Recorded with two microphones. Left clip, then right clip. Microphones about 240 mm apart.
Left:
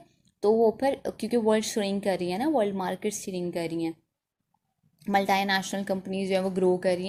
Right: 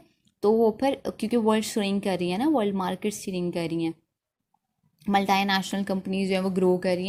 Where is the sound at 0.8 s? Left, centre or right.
Right.